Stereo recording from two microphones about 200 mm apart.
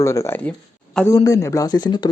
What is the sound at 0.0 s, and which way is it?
A man's voice, 15° left (ahead or behind).